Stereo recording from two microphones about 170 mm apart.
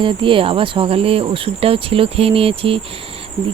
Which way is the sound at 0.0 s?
30° right (ahead or behind).